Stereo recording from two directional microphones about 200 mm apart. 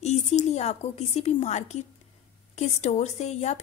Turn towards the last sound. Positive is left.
turn(degrees=35)  # may be behind; listen again after turning